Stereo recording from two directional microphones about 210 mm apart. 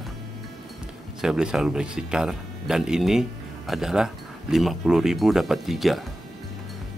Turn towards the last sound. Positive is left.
turn(degrees=0)  # may be behind; listen again after turning